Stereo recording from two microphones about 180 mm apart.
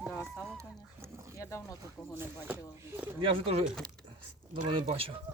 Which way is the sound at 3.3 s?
30° right (ahead or behind).